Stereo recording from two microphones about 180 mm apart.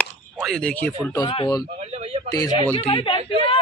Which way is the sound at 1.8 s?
40° right (ahead or behind).